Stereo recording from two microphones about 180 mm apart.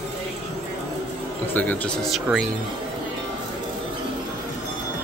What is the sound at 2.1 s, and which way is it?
Speech, centre (ahead or behind).